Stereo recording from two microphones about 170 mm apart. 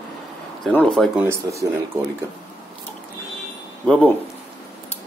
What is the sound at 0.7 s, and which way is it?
Speech, 5° left (ahead or behind).